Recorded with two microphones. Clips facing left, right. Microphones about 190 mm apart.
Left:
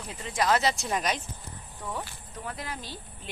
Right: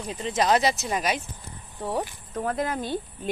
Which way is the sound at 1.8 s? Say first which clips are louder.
Right 8 dB; 35° right (ahead or behind).